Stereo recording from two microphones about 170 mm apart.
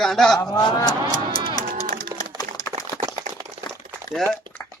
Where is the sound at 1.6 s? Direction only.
60° right (ahead or behind).